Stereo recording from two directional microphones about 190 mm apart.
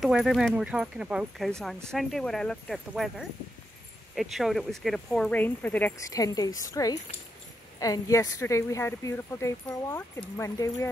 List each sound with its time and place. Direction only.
0.0 s speech: centre (ahead or behind); by 10.9 s 15° left (ahead or behind)